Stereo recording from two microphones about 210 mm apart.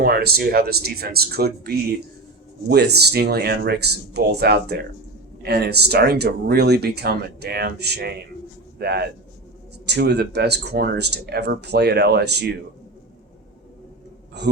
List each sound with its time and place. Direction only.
0.0 s speech: 45° right (ahead or behind)
14.4 s speech: 55° right (ahead or behind)